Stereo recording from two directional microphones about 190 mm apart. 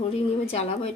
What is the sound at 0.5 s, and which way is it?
Speech, 30° left (ahead or behind).